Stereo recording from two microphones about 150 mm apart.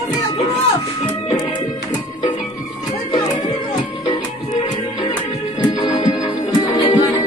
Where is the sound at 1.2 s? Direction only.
30° left (ahead or behind).